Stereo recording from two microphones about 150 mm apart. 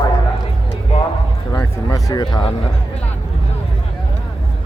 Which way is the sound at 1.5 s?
25° left (ahead or behind).